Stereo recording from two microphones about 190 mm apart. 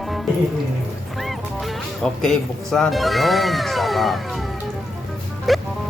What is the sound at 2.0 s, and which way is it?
Speech, centre (ahead or behind).